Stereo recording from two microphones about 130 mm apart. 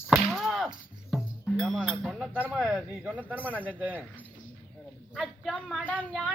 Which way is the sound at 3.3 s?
10° left (ahead or behind).